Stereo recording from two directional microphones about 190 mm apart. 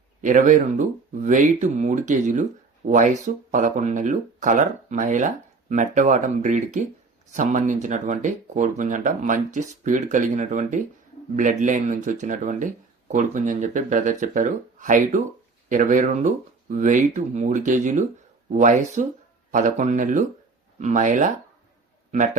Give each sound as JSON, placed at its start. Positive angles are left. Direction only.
{"t": 0.2, "sound": "speech", "side_deg": -40}